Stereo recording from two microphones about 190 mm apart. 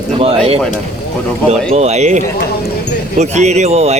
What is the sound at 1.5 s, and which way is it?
Speech, 35° right (ahead or behind).